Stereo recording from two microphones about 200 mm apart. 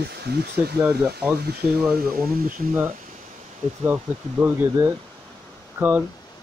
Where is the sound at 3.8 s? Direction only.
10° right (ahead or behind).